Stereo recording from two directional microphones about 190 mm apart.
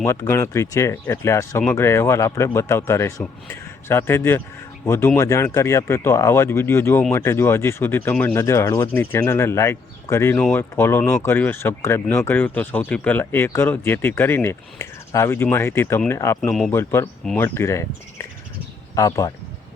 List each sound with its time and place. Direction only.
0.0 s speech: 15° left (ahead or behind)
16.4 s speech: 5° left (ahead or behind)
16.7 s speech: 15° left (ahead or behind)